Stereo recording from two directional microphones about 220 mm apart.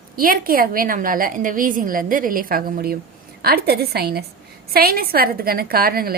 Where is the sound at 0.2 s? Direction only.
40° right (ahead or behind).